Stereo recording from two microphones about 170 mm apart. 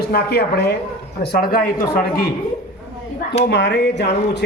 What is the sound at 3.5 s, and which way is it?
Speech, 90° left.